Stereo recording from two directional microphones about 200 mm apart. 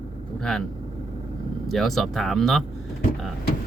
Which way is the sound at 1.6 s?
Centre (ahead or behind).